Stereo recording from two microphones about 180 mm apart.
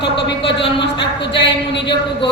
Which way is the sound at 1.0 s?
80° left.